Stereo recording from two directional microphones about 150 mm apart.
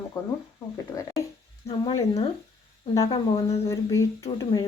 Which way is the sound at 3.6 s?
20° left (ahead or behind).